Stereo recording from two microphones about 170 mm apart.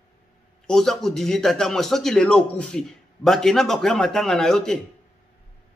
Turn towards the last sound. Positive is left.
turn(degrees=5)  # may be behind; listen again after turning